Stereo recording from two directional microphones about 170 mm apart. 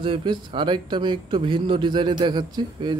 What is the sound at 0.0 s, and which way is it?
A man's voice, 30° right (ahead or behind).